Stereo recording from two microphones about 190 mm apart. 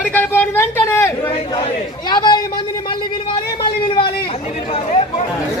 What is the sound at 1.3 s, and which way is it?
A man's voice, 25° left (ahead or behind).